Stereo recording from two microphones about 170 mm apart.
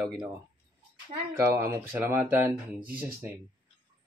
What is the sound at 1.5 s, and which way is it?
Speech, 15° right (ahead or behind).